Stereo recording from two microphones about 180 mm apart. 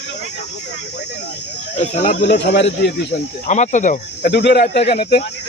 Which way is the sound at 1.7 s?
40° left (ahead or behind).